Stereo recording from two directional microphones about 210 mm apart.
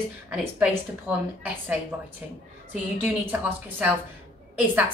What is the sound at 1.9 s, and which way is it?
A woman's voice, 10° right (ahead or behind).